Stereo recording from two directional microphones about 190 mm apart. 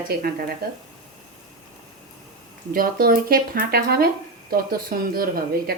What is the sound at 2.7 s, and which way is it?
A woman's voice, 50° right (ahead or behind).